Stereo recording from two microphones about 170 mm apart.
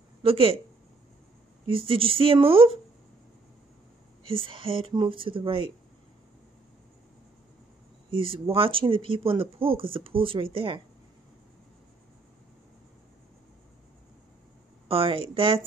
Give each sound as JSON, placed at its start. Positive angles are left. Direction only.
{"t": 0.2, "sound": "speech", "side_deg": -35}
{"t": 1.7, "sound": "speech", "side_deg": -30}
{"t": 4.3, "sound": "speech", "side_deg": -30}
{"t": 8.5, "sound": "speech", "side_deg": -30}
{"t": 14.9, "sound": "speech", "side_deg": -30}